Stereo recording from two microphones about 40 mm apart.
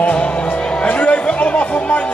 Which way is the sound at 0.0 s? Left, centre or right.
Left.